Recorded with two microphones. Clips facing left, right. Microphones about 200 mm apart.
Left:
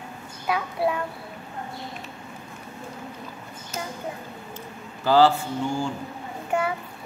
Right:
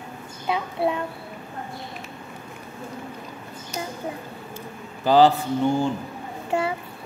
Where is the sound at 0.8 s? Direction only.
25° right (ahead or behind).